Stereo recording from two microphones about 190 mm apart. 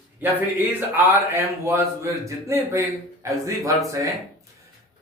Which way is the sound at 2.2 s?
15° right (ahead or behind).